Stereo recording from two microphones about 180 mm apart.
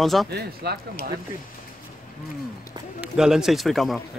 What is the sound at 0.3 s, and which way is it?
Speech, 65° right (ahead or behind).